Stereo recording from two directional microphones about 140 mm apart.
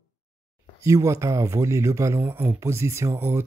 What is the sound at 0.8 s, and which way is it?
Speech, 20° right (ahead or behind).